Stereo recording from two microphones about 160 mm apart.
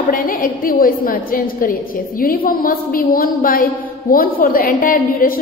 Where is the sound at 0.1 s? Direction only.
60° left (ahead or behind).